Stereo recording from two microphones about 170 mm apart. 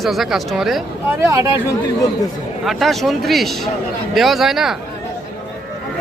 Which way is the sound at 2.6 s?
Centre (ahead or behind).